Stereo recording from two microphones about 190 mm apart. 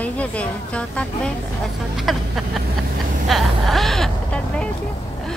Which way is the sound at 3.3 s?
Centre (ahead or behind).